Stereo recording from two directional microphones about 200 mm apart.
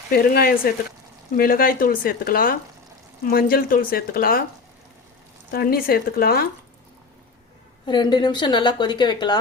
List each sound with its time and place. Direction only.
0.1 s speech: 50° left (ahead or behind)
5.5 s speech: 50° left (ahead or behind)
7.9 s a woman's voice: 20° left (ahead or behind)